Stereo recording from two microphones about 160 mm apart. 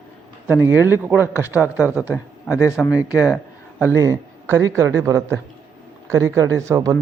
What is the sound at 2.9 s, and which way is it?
Speech, 10° right (ahead or behind).